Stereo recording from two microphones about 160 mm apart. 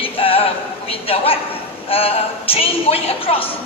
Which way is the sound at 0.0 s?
35° left (ahead or behind).